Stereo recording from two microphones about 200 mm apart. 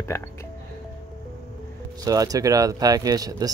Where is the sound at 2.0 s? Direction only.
15° right (ahead or behind).